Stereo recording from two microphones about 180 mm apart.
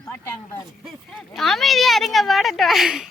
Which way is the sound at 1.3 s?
Centre (ahead or behind).